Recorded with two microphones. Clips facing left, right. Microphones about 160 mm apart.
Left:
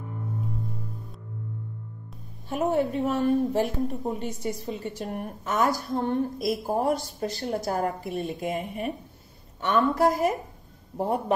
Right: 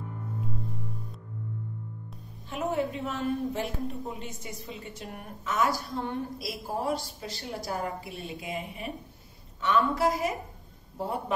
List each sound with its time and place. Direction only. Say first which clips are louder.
2.5 s a woman's voice: left 5 dB; 40° left (ahead or behind)